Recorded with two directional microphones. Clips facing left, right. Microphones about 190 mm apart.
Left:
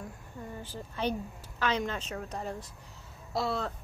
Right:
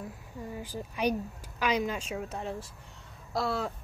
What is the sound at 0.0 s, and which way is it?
A woman's voice, 5° right (ahead or behind).